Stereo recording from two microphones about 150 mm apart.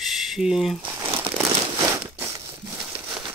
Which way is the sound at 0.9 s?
25° right (ahead or behind).